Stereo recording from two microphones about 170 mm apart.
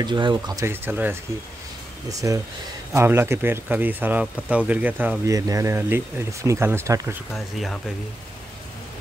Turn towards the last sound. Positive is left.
turn(degrees=0)  # may be behind; listen again after turning